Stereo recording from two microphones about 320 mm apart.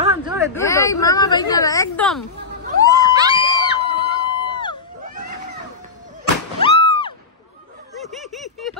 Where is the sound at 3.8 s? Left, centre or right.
Right.